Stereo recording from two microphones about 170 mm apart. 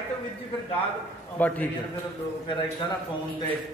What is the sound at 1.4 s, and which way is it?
Speech, 10° left (ahead or behind).